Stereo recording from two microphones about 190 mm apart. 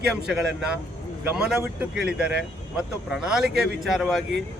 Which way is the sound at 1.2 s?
5° right (ahead or behind).